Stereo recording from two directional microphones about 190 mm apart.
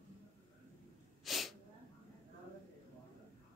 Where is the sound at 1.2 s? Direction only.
Centre (ahead or behind).